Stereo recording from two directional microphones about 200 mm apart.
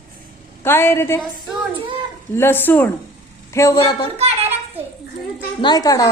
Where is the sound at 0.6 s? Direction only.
10° left (ahead or behind).